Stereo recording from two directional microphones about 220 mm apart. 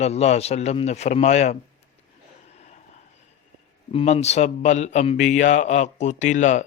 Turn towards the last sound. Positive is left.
turn(degrees=35)  # may be behind; listen again after turning